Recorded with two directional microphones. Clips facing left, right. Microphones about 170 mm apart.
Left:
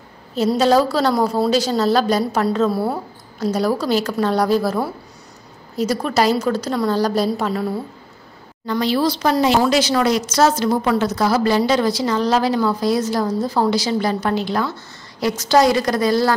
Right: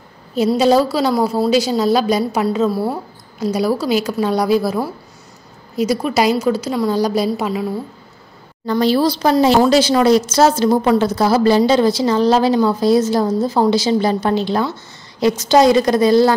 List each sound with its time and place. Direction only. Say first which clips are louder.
0.6 s a woman's voice: right 1 dB; 10° right (ahead or behind)
8.6 s speech: right 4 dB; 40° right (ahead or behind)